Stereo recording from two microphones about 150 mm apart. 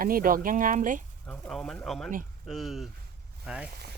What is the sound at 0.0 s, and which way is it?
Speech, 70° right (ahead or behind).